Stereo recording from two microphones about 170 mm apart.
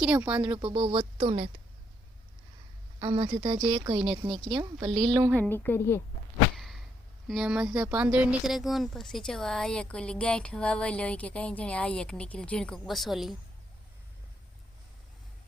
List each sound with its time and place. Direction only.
0.0 s speech: 5° right (ahead or behind)
0.3 s speech: 30° right (ahead or behind)
3.0 s speech: 25° right (ahead or behind)
5.3 s a woman's voice: 10° left (ahead or behind)
6.6 s a sound: centre (ahead or behind)
7.3 s speech: 5° right (ahead or behind)